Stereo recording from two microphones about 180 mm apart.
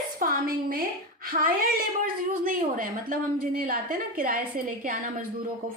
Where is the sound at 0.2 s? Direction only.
50° right (ahead or behind).